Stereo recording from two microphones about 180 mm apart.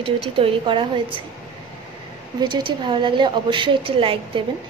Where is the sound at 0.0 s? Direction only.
30° right (ahead or behind).